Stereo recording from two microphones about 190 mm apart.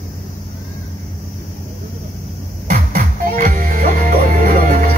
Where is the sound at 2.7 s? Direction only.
45° right (ahead or behind).